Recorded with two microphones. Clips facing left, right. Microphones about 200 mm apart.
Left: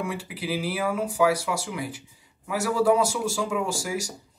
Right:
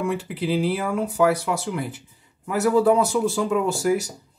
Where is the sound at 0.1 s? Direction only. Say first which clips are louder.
Right 6 dB; 60° right (ahead or behind).